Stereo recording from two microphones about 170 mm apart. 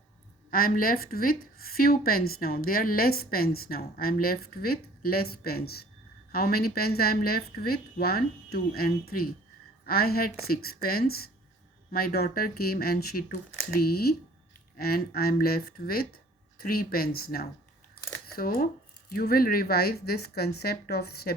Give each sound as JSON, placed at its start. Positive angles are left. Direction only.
{"t": 0.5, "sound": "speech", "side_deg": 60}